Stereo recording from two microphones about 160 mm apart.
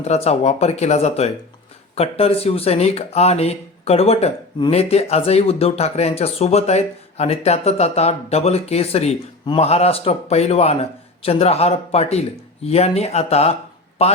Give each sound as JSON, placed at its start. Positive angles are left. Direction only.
{"t": 0.0, "sound": "speech", "side_deg": 40}